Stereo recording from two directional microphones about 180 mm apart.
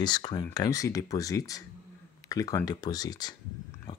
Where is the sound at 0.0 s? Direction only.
25° left (ahead or behind).